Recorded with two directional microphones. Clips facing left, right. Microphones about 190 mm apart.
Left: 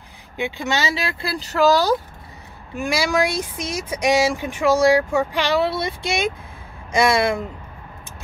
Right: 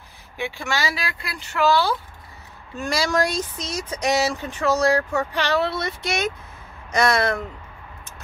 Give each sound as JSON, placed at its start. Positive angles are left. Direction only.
{"t": 0.4, "sound": "speech", "side_deg": 20}
{"t": 2.7, "sound": "speech", "side_deg": 10}